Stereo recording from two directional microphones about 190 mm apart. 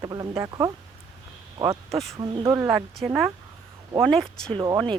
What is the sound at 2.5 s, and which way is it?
Speech, 10° right (ahead or behind).